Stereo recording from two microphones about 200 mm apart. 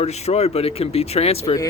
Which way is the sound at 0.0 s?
30° left (ahead or behind).